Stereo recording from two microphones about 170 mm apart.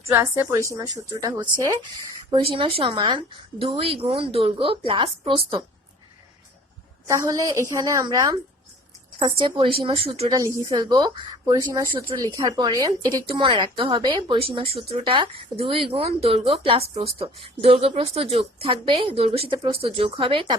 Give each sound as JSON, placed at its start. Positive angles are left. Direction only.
{"t": 0.1, "sound": "a woman's voice", "side_deg": -20}
{"t": 2.3, "sound": "a woman's voice", "side_deg": -30}
{"t": 7.1, "sound": "a woman's voice", "side_deg": -20}